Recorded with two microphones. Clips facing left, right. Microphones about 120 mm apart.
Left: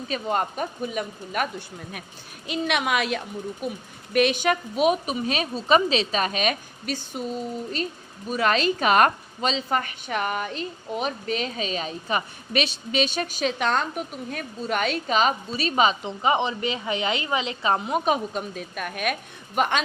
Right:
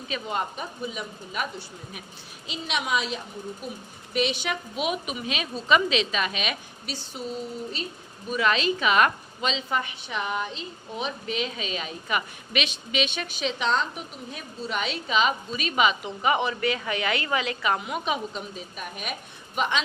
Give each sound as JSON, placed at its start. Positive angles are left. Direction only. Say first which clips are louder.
{"t": 0.1, "sound": "a woman's voice", "louder": "left 4 dB", "side_deg": 45}
{"t": 8.3, "sound": "a woman's voice", "louder": "left 2 dB", "side_deg": 45}